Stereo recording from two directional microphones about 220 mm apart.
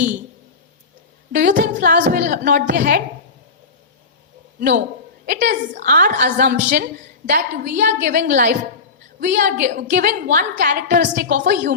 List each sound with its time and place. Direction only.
1.3 s a woman's voice: 35° right (ahead or behind)
5.2 s a woman's voice: 40° right (ahead or behind)